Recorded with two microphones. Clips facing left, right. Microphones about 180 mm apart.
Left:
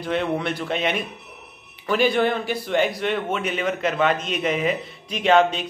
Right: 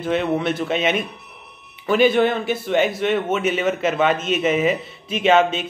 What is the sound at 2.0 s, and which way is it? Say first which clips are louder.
Speech: right 4 dB; 20° right (ahead or behind).